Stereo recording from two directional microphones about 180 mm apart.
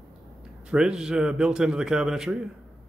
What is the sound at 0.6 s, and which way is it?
Speech, 5° right (ahead or behind).